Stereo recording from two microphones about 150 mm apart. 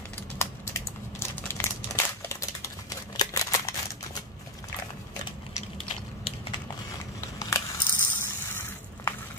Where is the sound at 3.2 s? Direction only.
20° left (ahead or behind).